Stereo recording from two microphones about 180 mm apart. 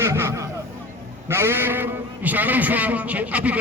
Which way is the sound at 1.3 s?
15° right (ahead or behind).